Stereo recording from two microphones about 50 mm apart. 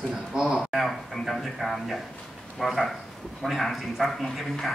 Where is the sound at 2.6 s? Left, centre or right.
Centre.